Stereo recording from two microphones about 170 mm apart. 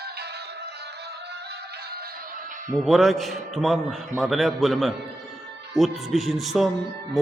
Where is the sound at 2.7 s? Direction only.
Centre (ahead or behind).